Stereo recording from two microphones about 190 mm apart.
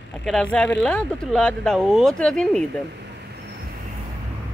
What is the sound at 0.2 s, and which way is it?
Speech, 5° left (ahead or behind).